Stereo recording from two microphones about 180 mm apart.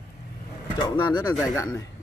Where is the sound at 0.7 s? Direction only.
25° left (ahead or behind).